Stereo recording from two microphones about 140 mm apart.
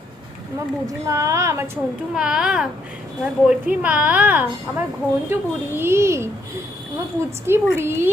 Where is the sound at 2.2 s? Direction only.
5° right (ahead or behind).